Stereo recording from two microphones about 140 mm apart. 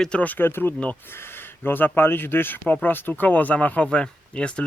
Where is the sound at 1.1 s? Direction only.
15° left (ahead or behind).